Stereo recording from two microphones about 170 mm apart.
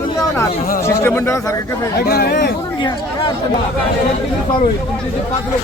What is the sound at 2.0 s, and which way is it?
Speech, 65° left (ahead or behind).